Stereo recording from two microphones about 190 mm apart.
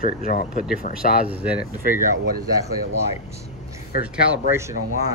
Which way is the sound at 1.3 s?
5° right (ahead or behind).